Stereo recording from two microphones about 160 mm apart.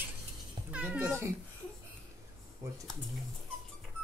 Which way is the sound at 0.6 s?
10° right (ahead or behind).